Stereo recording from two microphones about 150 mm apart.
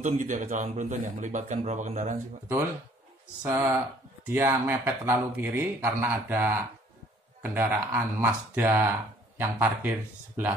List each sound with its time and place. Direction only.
0.0 s a man's voice: 60° right (ahead or behind)
3.4 s speech: 15° right (ahead or behind)